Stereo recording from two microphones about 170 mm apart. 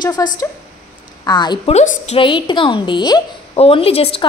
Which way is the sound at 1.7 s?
40° left (ahead or behind).